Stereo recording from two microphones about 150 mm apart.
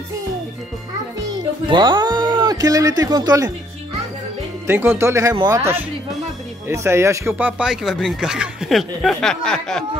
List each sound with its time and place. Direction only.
1.7 s speech: 30° right (ahead or behind)
4.6 s speech: 15° right (ahead or behind); by 9.8 s 5° left (ahead or behind)